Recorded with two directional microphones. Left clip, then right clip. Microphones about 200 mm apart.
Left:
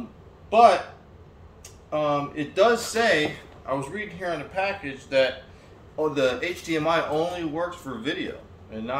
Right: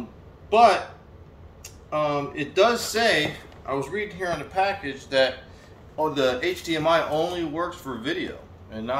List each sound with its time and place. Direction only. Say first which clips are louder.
0.5 s a man's voice: even; 10° left (ahead or behind)
5.9 s speech: even; 15° left (ahead or behind)